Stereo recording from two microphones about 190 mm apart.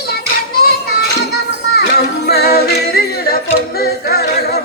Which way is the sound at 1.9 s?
55° left (ahead or behind).